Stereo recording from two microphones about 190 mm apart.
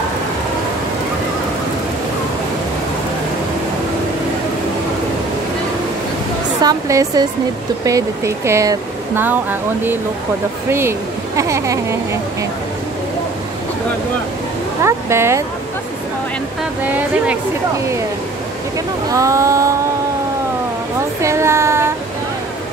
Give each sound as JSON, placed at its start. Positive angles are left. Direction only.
{"t": 6.6, "sound": "speech", "side_deg": -20}
{"t": 14.8, "sound": "speech", "side_deg": -15}
{"t": 16.8, "sound": "speech", "side_deg": -10}
{"t": 19.0, "sound": "speech", "side_deg": -15}
{"t": 21.2, "sound": "speech", "side_deg": -15}